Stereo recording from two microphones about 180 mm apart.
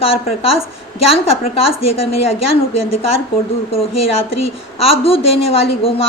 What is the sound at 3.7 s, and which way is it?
A woman's voice, 30° left (ahead or behind).